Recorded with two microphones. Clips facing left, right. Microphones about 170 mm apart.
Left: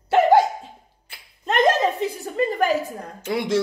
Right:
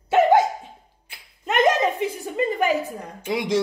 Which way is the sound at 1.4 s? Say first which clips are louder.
Even; 15° right (ahead or behind).